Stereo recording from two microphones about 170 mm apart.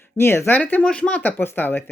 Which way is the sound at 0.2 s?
15° left (ahead or behind).